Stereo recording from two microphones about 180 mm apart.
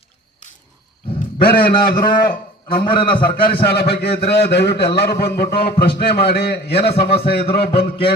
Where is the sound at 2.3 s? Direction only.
50° left (ahead or behind).